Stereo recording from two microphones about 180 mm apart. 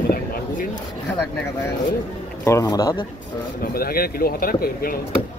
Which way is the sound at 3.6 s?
55° left (ahead or behind).